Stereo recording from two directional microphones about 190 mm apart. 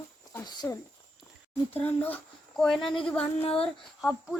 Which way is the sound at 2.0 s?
10° left (ahead or behind).